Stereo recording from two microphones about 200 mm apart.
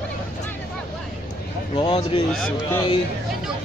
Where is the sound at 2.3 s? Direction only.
5° left (ahead or behind).